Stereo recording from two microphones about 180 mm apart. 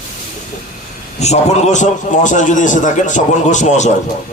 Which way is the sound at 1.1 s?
40° left (ahead or behind).